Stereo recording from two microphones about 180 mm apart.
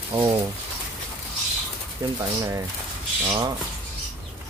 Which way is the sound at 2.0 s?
25° right (ahead or behind).